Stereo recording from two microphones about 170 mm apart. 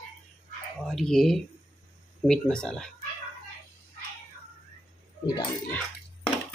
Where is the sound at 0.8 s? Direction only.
Centre (ahead or behind).